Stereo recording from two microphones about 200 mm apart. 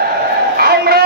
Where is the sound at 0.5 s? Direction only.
50° right (ahead or behind).